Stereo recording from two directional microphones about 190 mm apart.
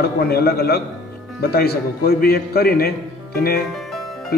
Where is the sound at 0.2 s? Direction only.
55° left (ahead or behind).